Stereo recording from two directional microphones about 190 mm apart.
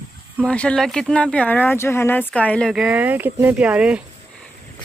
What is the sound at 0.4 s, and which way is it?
Speech, 5° left (ahead or behind).